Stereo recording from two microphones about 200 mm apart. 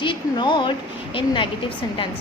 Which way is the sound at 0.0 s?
25° left (ahead or behind).